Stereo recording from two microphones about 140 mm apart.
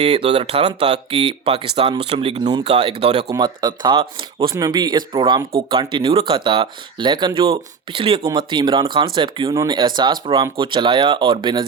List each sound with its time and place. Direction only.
0.0 s speech: 40° right (ahead or behind)
3.3 s speech: 30° right (ahead or behind)